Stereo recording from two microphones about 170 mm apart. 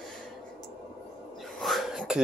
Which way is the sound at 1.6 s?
Centre (ahead or behind).